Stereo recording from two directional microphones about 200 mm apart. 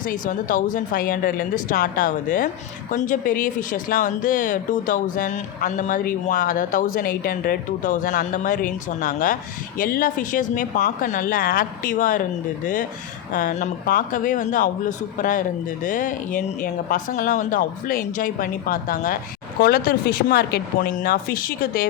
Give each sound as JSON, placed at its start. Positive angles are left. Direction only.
{"t": 0.0, "sound": "speech", "side_deg": 40}
{"t": 13.3, "sound": "speech", "side_deg": 40}